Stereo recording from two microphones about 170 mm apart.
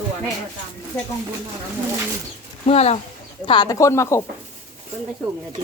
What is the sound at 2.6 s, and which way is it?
Speech, 40° left (ahead or behind).